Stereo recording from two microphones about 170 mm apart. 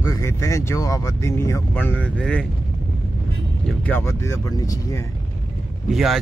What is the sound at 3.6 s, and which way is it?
Speech, 10° left (ahead or behind).